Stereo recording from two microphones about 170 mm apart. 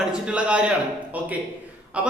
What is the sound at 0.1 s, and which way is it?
Speech, 5° right (ahead or behind).